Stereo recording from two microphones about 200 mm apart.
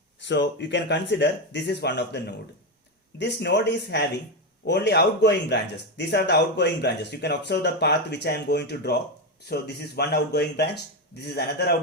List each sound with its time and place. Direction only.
0.2 s speech: 60° left (ahead or behind)